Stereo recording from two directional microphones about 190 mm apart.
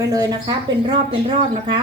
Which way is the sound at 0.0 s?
20° right (ahead or behind).